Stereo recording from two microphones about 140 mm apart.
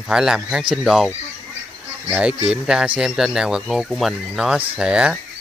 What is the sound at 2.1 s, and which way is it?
Speech, 10° right (ahead or behind).